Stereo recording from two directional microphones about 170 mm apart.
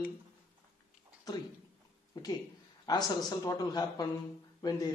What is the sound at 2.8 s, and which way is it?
A man's voice, 25° left (ahead or behind).